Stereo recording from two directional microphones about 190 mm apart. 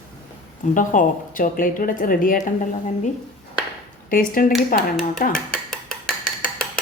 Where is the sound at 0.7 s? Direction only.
45° left (ahead or behind).